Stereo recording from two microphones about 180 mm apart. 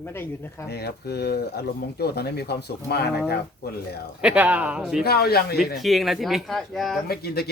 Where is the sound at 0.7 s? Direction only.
65° left (ahead or behind).